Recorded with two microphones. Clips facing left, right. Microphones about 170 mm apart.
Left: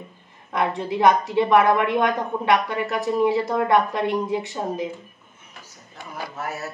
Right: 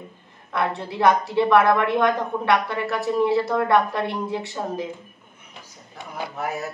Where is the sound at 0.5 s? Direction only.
15° left (ahead or behind).